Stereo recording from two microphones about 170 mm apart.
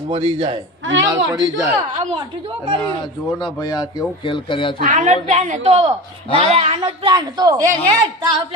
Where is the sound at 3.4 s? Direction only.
25° left (ahead or behind).